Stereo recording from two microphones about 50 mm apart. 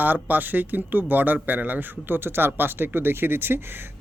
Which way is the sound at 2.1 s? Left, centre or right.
Right.